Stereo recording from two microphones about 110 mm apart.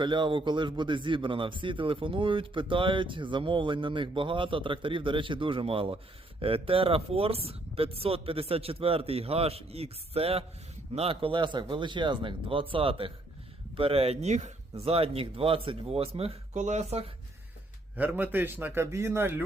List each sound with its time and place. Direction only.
0.0 s speech: 45° right (ahead or behind); by 17.1 s 80° right
17.9 s a man's voice: 15° right (ahead or behind)